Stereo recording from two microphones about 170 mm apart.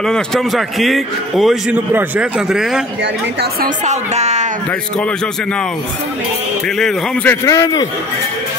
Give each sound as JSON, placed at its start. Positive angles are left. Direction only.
{"t": 0.0, "sound": "a man's voice", "side_deg": 0}
{"t": 3.6, "sound": "a woman's voice", "side_deg": -45}
{"t": 6.8, "sound": "a man's voice", "side_deg": 5}
{"t": 7.4, "sound": "a man's voice", "side_deg": 20}